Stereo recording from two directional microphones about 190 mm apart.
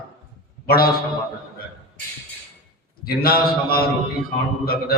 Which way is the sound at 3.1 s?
50° left (ahead or behind).